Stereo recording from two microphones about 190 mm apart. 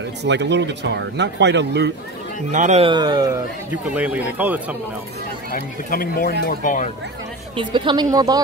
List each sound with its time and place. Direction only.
0.2 s speech: 65° right (ahead or behind)
2.5 s speech: 40° right (ahead or behind)
2.8 s speech: 25° right (ahead or behind)
3.7 s speech: 10° right (ahead or behind)
5.5 s speech: 50° left (ahead or behind)
7.5 s speech: 25° right (ahead or behind)